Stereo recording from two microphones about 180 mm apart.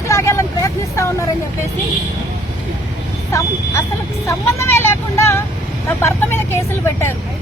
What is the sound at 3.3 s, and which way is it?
Speech, 15° left (ahead or behind).